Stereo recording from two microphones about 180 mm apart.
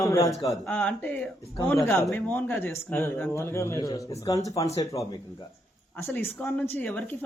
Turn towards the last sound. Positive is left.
turn(degrees=10)  # may be behind; listen again after turning